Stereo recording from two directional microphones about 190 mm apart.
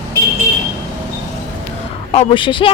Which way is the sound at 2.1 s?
30° left (ahead or behind).